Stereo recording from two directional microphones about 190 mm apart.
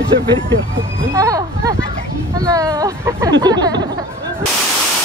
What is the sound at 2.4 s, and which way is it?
Speech, 20° right (ahead or behind).